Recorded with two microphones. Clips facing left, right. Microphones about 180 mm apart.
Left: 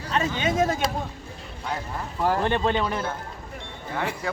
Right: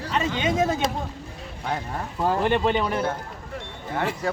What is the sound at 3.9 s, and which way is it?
Speech, 45° right (ahead or behind).